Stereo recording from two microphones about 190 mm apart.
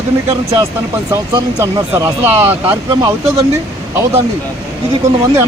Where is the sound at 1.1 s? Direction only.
15° right (ahead or behind).